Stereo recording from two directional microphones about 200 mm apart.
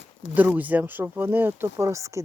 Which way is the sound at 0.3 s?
10° right (ahead or behind).